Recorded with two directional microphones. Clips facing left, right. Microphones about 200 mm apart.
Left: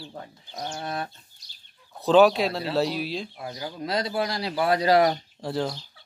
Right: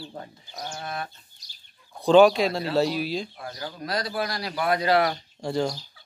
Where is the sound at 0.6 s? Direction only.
25° left (ahead or behind).